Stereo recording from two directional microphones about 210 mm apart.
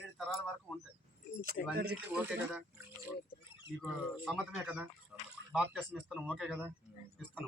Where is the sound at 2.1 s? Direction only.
5° right (ahead or behind).